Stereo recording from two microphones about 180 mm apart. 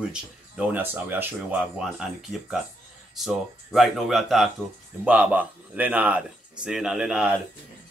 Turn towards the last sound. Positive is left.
turn(degrees=-5)  # may be behind; listen again after turning